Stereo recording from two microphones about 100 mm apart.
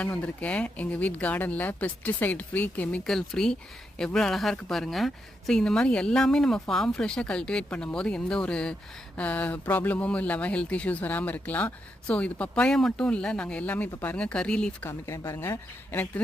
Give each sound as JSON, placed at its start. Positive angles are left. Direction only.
{"t": 0.0, "sound": "speech", "side_deg": 15}
{"t": 3.1, "sound": "speech", "side_deg": 5}
{"t": 14.8, "sound": "a woman's voice", "side_deg": 25}